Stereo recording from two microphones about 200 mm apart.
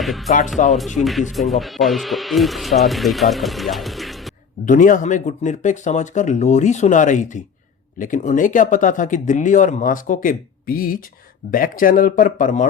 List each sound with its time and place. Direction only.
0.0 s speech: centre (ahead or behind)
4.6 s speech: 40° left (ahead or behind)